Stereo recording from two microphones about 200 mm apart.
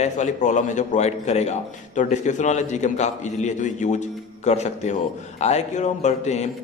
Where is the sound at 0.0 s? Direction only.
35° left (ahead or behind).